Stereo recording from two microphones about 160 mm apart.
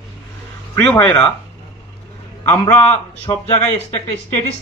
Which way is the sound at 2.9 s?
15° left (ahead or behind).